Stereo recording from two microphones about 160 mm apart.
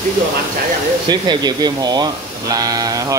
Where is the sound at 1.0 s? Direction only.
25° right (ahead or behind).